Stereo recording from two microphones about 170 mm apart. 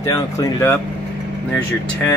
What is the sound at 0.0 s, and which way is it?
Speech, 20° left (ahead or behind).